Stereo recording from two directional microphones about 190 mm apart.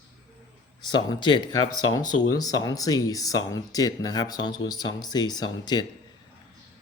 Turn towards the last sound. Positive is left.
turn(degrees=20)  # may be behind; listen again after turning